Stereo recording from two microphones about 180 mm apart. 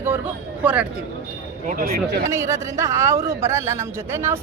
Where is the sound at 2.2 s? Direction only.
15° right (ahead or behind).